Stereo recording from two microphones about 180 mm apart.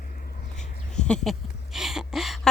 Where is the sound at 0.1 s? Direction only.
45° left (ahead or behind).